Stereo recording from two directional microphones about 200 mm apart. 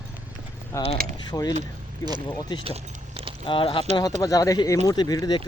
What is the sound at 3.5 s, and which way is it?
Speech, 25° left (ahead or behind).